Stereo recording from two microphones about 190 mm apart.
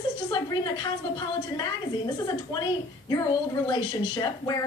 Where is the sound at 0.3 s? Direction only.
20° left (ahead or behind).